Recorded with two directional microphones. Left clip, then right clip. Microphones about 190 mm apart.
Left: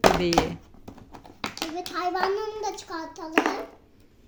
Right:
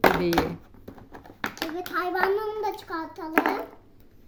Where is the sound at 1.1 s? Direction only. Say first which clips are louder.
Right 2 dB; 35° left (ahead or behind).